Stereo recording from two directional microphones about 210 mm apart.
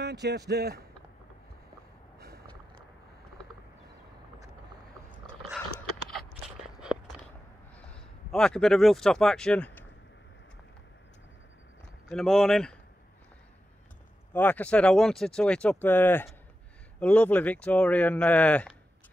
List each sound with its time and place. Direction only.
0.0 s a sound: 55° right (ahead or behind)
0.5 s speech: 50° right (ahead or behind)
2.1 s a sound: 50° right (ahead or behind)
5.2 s dog: centre (ahead or behind)
7.7 s speech: 5° left (ahead or behind)
12.1 s speech: centre (ahead or behind)
14.3 s speech: 10° left (ahead or behind)